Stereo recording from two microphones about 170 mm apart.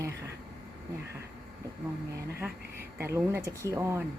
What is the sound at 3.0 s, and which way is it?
Speech, 15° right (ahead or behind).